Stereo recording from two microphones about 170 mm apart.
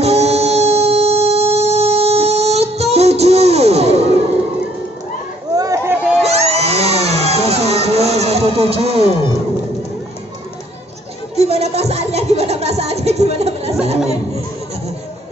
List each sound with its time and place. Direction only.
0.0 s music: 40° right (ahead or behind)
5.6 s run: 15° right (ahead or behind)
6.2 s a sound: 40° right (ahead or behind)
11.3 s music: 40° right (ahead or behind)